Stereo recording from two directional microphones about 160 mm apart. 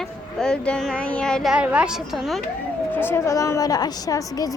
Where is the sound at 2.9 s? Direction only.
15° left (ahead or behind).